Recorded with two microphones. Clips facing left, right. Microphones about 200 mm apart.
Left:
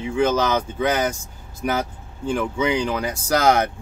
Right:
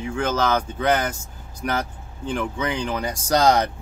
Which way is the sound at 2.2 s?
5° left (ahead or behind).